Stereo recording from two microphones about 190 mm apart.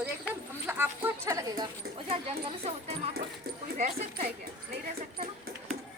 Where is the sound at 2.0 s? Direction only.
35° right (ahead or behind).